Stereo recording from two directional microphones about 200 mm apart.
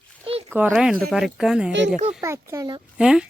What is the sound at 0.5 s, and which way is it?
Speech, 5° right (ahead or behind).